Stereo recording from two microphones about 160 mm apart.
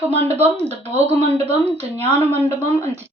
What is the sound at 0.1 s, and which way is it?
Speech, 40° right (ahead or behind).